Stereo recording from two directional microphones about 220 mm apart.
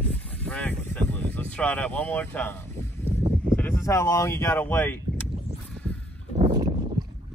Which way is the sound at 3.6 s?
15° left (ahead or behind).